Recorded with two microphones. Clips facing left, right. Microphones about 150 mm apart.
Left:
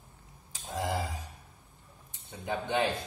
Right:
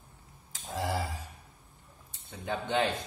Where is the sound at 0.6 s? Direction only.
20° left (ahead or behind).